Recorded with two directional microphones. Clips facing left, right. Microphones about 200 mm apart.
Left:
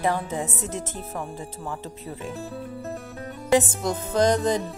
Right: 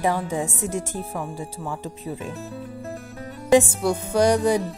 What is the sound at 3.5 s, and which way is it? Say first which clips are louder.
Speech: right 4 dB; 10° right (ahead or behind).